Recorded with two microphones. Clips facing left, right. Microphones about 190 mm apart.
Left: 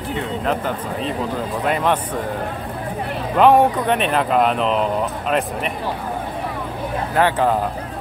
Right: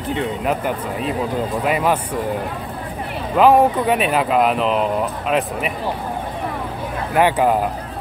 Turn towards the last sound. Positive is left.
turn(degrees=-15)  # may be behind; listen again after turning